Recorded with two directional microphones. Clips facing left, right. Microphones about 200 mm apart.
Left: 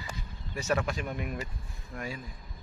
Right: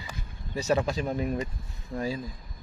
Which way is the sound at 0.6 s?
30° right (ahead or behind).